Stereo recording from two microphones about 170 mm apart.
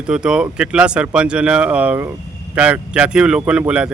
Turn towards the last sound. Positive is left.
turn(degrees=-5)  # may be behind; listen again after turning